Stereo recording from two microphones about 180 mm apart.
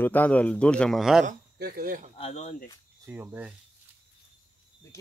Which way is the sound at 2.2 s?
40° left (ahead or behind).